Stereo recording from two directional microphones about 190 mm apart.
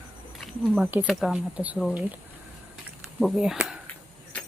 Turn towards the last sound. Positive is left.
turn(degrees=-5)  # may be behind; listen again after turning